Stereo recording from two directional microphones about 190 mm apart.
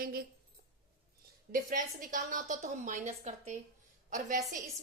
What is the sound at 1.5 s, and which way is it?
A woman's voice, 45° right (ahead or behind).